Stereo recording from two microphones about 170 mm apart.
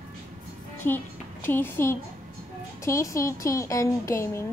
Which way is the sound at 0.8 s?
10° left (ahead or behind).